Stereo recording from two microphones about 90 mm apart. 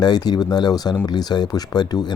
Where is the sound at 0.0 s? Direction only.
50° left (ahead or behind).